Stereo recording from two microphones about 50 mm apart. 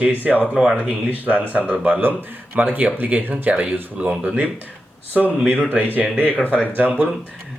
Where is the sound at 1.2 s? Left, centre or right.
Right.